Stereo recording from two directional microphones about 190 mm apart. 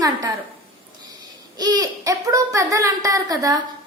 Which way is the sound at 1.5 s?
20° right (ahead or behind).